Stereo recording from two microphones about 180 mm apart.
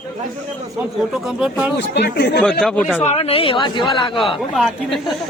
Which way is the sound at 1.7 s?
70° left (ahead or behind).